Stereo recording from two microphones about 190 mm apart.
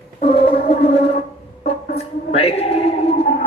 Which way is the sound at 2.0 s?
30° left (ahead or behind).